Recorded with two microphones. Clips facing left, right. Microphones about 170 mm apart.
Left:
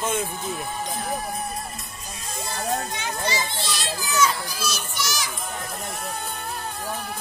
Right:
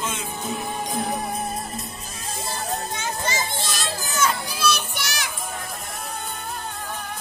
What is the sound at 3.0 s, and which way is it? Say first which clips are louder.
Children playing: even; 45° right (ahead or behind).